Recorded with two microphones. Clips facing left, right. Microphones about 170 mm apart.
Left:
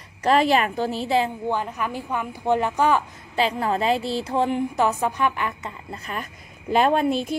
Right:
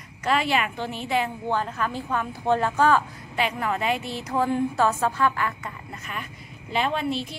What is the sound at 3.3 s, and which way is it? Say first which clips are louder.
A woman's voice: left 4 dB; 30° left (ahead or behind).